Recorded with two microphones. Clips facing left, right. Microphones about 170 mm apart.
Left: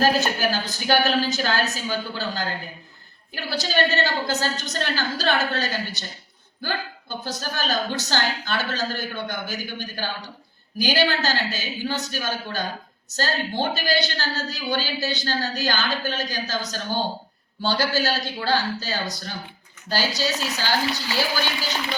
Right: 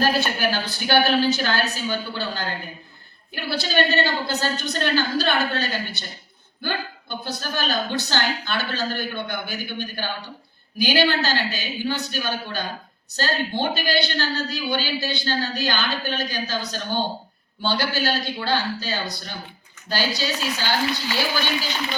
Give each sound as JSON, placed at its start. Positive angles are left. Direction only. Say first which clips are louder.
{"t": 0.0, "sound": "a woman's voice", "louder": "left 1 dB", "side_deg": 40}
{"t": 7.3, "sound": "a woman's voice", "louder": "right 1 dB", "side_deg": 40}